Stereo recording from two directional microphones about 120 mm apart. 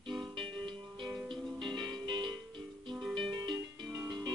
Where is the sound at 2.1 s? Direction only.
40° right (ahead or behind).